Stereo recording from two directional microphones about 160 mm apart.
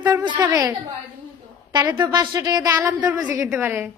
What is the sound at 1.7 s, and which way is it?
A woman's voice, 25° right (ahead or behind).